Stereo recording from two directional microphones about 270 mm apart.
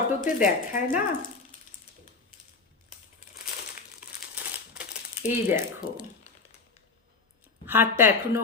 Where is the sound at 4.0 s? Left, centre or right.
Centre.